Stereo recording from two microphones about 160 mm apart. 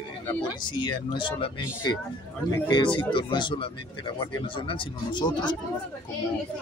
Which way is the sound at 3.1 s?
30° left (ahead or behind).